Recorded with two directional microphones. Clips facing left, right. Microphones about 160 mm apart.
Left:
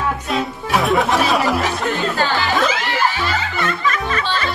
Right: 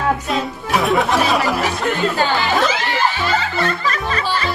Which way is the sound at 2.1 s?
15° right (ahead or behind).